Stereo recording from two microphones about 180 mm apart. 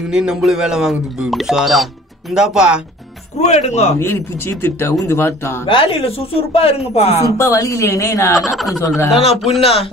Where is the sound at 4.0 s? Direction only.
15° left (ahead or behind).